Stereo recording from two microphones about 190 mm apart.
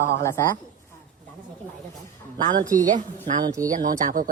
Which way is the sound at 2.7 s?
45° right (ahead or behind).